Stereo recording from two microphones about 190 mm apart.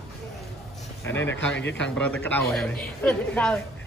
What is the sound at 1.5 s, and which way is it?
Speech, 65° left (ahead or behind).